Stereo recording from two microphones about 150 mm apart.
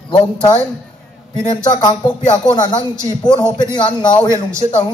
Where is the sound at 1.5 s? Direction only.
30° left (ahead or behind).